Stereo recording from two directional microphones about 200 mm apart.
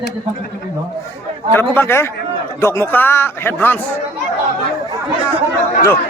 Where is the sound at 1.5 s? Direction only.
10° left (ahead or behind).